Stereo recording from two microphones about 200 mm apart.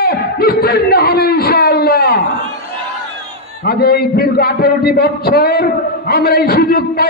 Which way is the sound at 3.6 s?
50° left (ahead or behind).